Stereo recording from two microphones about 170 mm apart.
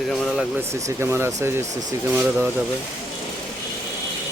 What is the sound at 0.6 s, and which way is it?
Speech, 15° right (ahead or behind).